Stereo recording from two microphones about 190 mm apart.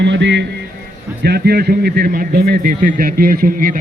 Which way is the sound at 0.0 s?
65° right (ahead or behind).